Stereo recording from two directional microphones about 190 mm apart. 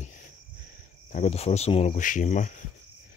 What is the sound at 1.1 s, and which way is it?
Speech, 35° left (ahead or behind).